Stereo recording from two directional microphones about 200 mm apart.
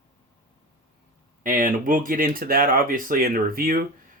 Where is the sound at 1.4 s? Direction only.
45° right (ahead or behind).